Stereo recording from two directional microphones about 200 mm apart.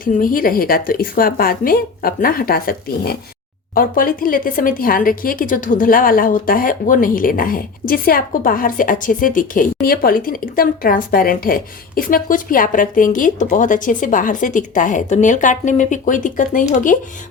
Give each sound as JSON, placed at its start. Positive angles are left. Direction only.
{"t": 0.0, "sound": "speech", "side_deg": 45}